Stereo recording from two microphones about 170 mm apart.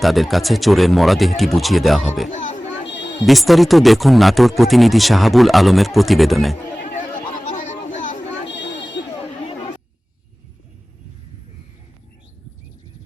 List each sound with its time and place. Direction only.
0.0 s speech: centre (ahead or behind)
2.3 s children playing: 45° left (ahead or behind)
2.8 s a sound: 90° left
3.2 s speech: centre (ahead or behind)
6.8 s chatter: 50° left (ahead or behind)
7.9 s a sound: 45° left (ahead or behind)
8.4 s buzzer: 90° left